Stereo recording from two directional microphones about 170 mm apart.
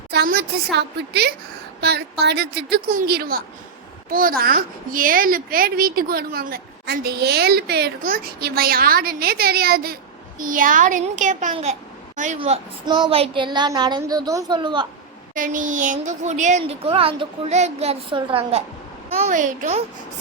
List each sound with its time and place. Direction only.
0.1 s a woman's voice: 70° right (ahead or behind); by 11.5 s 50° right (ahead or behind)
11.5 s a sound: 40° right (ahead or behind)
12.4 s speech: 30° right (ahead or behind)
15.4 s speech: 50° right (ahead or behind); by 18.6 s 30° right (ahead or behind)
19.2 s a child's voice: 50° right (ahead or behind)